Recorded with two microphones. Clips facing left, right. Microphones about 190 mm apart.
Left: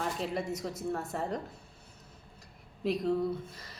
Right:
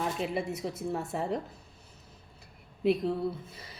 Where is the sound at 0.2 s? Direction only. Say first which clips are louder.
Right 2 dB; 5° right (ahead or behind).